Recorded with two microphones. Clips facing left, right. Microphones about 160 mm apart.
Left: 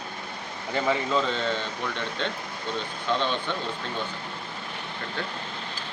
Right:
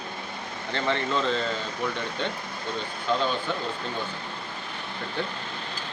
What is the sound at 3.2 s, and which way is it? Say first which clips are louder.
Speech: right 1 dB; 5° right (ahead or behind).